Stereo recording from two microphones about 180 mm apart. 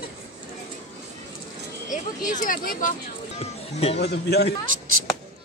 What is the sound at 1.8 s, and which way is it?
Speech, 45° left (ahead or behind).